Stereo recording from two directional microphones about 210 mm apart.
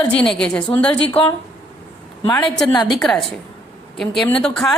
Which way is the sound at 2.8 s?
Centre (ahead or behind).